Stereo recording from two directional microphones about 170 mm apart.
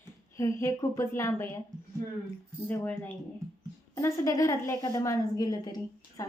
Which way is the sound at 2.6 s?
10° left (ahead or behind).